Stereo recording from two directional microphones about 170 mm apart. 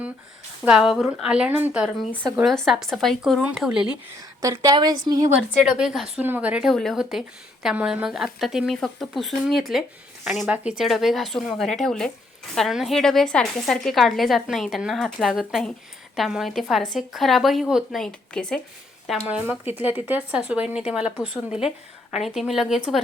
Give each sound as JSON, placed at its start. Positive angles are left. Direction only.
{"t": 0.6, "sound": "a woman's voice", "side_deg": -5}
{"t": 4.4, "sound": "a woman's voice", "side_deg": -20}
{"t": 5.5, "sound": "a woman's voice", "side_deg": -5}